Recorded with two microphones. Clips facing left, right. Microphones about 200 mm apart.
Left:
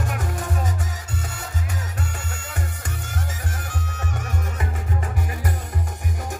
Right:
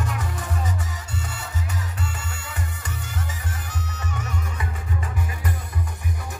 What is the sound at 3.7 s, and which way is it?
Music, 50° left (ahead or behind).